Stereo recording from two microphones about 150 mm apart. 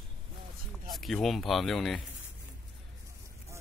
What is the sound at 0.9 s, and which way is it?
Speech, centre (ahead or behind).